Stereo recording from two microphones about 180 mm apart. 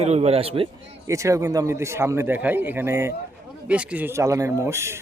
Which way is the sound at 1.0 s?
15° right (ahead or behind).